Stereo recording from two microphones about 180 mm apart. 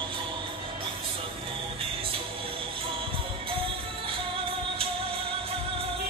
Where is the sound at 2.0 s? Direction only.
30° right (ahead or behind).